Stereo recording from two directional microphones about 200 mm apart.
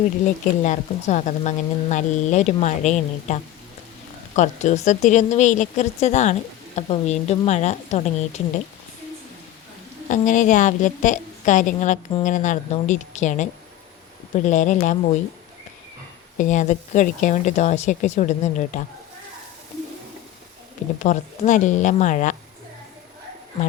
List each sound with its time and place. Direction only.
0.6 s speech: 35° left (ahead or behind)
10.1 s speech: 40° left (ahead or behind)
16.4 s speech: 40° left (ahead or behind)
21.0 s speech: 40° left (ahead or behind)